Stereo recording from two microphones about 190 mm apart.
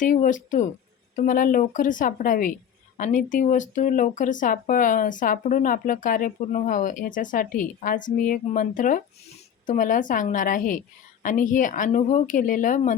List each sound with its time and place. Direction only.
0.0 s speech: 40° left (ahead or behind)